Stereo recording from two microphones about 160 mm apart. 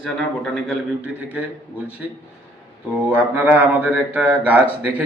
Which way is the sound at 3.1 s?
10° right (ahead or behind).